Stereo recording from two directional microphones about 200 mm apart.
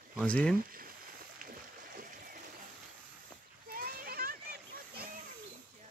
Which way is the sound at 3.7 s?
45° right (ahead or behind).